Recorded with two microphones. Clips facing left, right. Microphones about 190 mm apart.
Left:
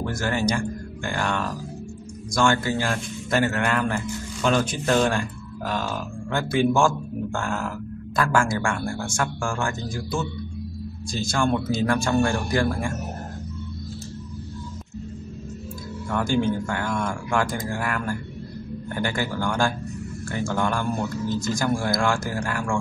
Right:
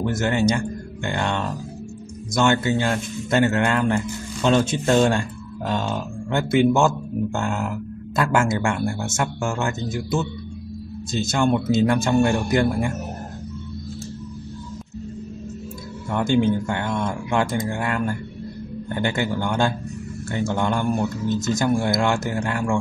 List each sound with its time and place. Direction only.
0.0 s a man's voice: 20° right (ahead or behind)
16.1 s a man's voice: 20° right (ahead or behind)